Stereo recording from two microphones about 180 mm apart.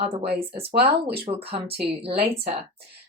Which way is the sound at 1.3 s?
30° right (ahead or behind).